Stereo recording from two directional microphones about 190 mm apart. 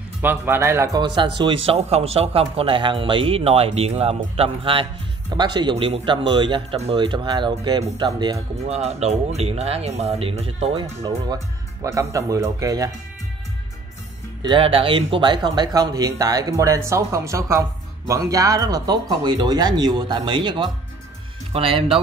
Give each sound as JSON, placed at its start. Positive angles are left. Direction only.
{"t": 0.2, "sound": "speech", "side_deg": -10}
{"t": 8.6, "sound": "speech", "side_deg": -35}
{"t": 14.4, "sound": "speech", "side_deg": -25}